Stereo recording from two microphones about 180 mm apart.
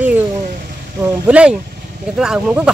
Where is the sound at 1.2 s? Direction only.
5° right (ahead or behind).